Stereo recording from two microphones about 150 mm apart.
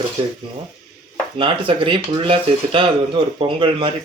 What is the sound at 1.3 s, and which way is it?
Speech, 35° right (ahead or behind).